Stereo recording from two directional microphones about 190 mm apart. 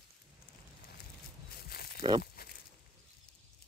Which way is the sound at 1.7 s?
55° left (ahead or behind).